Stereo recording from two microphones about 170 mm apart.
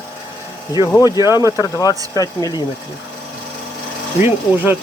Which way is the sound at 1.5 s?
20° left (ahead or behind).